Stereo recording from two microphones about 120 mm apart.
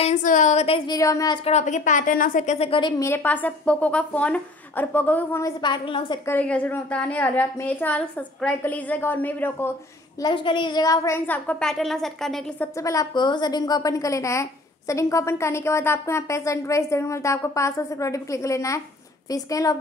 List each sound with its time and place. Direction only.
0.0 s a woman's voice: 90° left
0.8 s a woman's voice: 30° left (ahead or behind)
1.4 s a woman's voice: 75° left (ahead or behind)
3.0 s a woman's voice: 20° left (ahead or behind)
5.4 s a woman's voice: 40° left (ahead or behind)
6.2 s a woman's voice: 15° left (ahead or behind)
10.2 s a woman's voice: 45° left (ahead or behind); by 11.7 s 15° left (ahead or behind)
11.7 s speech: centre (ahead or behind)
12.7 s a woman's voice: 25° left (ahead or behind)
13.1 s a woman's voice: 40° left (ahead or behind)